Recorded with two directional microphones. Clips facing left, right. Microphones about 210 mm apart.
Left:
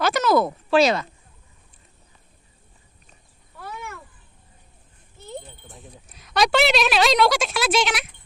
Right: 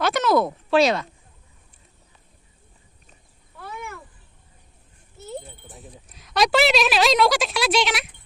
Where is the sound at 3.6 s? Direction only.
5° left (ahead or behind).